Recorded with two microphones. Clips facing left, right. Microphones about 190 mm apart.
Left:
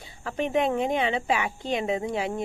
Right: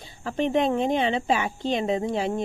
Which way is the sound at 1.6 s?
25° right (ahead or behind).